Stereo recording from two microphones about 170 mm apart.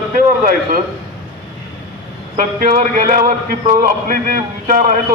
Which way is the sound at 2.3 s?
50° right (ahead or behind).